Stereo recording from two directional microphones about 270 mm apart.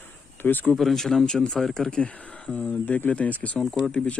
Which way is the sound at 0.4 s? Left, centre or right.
Centre.